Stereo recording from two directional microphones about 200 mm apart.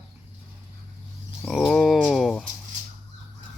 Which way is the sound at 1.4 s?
5° left (ahead or behind).